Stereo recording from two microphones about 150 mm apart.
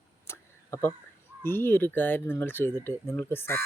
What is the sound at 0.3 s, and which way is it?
Tick-tock, 15° left (ahead or behind).